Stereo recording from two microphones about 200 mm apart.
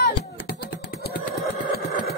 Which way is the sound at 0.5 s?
50° left (ahead or behind).